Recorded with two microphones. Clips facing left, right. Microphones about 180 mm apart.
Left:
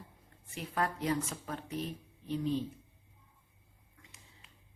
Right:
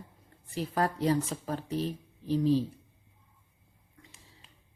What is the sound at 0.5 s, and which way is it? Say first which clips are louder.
A woman's voice: right 5 dB; 35° right (ahead or behind).